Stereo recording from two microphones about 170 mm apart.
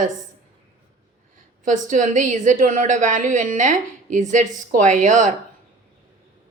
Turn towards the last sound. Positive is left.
turn(degrees=-45)  # may be behind; listen again after turning